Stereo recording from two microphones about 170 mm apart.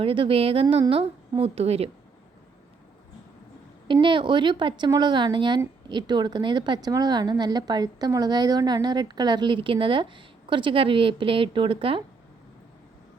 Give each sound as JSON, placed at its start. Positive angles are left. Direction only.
{"t": 0.0, "sound": "a woman's voice", "side_deg": -30}
{"t": 4.0, "sound": "speech", "side_deg": -30}